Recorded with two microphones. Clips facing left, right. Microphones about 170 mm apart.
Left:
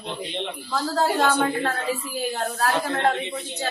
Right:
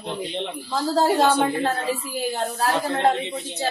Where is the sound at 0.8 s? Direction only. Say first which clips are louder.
Right 3 dB; 20° right (ahead or behind).